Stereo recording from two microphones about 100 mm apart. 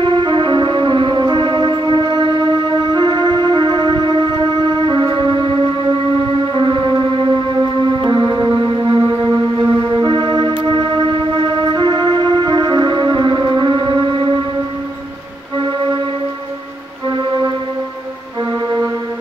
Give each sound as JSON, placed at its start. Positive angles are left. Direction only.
{"t": 0.0, "sound": "music", "side_deg": -55}
{"t": 6.5, "sound": "music", "side_deg": -50}
{"t": 8.0, "sound": "music", "side_deg": -45}